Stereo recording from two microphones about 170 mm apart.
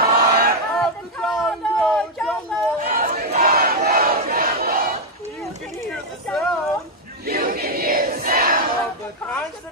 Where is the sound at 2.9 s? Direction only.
60° right (ahead or behind).